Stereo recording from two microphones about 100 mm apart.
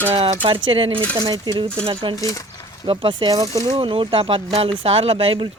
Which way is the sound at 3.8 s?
60° right (ahead or behind).